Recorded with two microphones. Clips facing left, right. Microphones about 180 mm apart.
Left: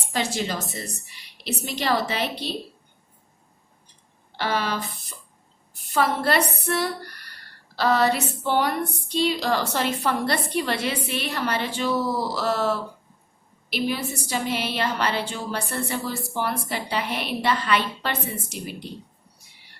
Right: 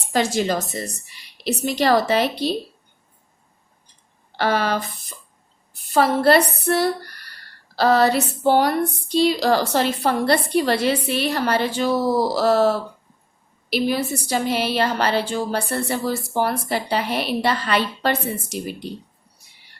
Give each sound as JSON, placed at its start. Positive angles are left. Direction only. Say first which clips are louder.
{"t": 0.1, "sound": "a woman's voice", "louder": "right 6 dB", "side_deg": -45}
{"t": 4.4, "sound": "speech", "louder": "right 5 dB", "side_deg": -45}
{"t": 5.9, "sound": "a woman's voice", "louder": "right 6 dB", "side_deg": -35}